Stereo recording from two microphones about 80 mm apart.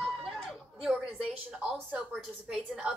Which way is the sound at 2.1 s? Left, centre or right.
Centre.